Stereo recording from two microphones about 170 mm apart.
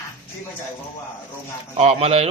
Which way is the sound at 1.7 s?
40° right (ahead or behind).